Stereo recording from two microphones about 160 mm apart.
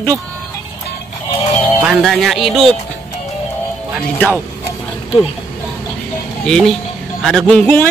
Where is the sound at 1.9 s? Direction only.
Centre (ahead or behind).